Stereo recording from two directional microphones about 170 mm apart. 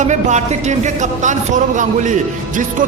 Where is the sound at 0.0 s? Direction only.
45° right (ahead or behind).